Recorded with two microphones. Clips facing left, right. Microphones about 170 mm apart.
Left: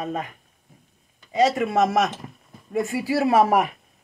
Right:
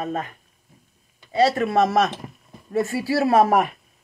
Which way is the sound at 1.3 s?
15° left (ahead or behind).